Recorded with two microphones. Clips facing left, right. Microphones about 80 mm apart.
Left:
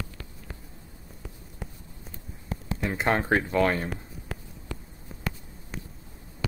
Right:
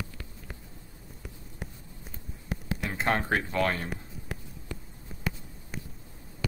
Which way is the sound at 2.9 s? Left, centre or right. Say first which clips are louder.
Left 3 dB; centre.